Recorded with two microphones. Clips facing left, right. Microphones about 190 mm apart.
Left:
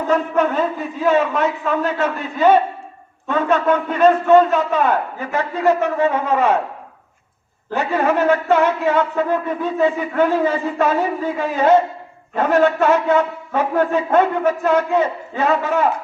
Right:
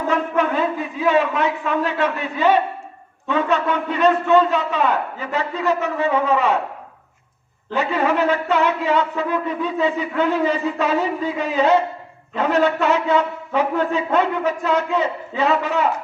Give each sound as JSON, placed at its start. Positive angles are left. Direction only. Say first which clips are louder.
{"t": 0.1, "sound": "a sound", "louder": "left 3 dB", "side_deg": 40}
{"t": 1.0, "sound": "a man's voice", "louder": "left 2 dB", "side_deg": 40}
{"t": 7.7, "sound": "a man's voice", "louder": "left 2 dB", "side_deg": 50}